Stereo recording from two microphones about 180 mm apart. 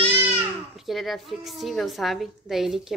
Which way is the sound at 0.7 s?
Centre (ahead or behind).